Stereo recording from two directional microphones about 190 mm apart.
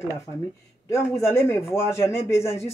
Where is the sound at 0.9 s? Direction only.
15° left (ahead or behind).